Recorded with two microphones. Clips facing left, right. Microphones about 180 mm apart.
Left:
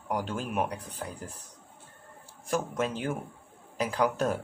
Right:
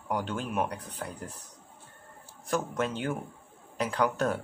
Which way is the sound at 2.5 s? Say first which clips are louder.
Even; 10° left (ahead or behind).